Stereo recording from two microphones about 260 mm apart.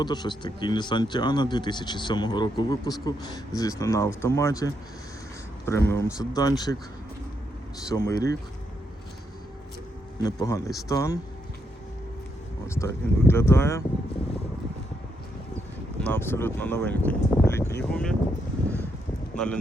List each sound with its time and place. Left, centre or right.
0.0 s speech: centre
7.9 s speech: centre
10.2 s speech: centre
12.6 s speech: centre
16.0 s speech: centre